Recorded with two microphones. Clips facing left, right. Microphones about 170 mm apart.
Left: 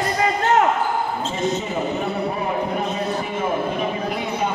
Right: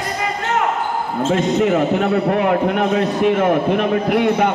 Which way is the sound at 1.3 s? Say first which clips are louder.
Right 10 dB; 75° right (ahead or behind).